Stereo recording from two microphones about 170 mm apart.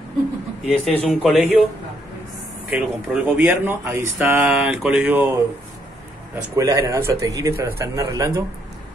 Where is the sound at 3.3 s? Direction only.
10° right (ahead or behind).